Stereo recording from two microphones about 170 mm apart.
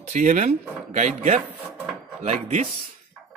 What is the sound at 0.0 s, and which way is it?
Speech, 45° right (ahead or behind).